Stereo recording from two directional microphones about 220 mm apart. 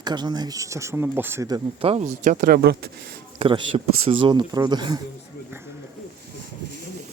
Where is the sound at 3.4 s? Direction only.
25° right (ahead or behind).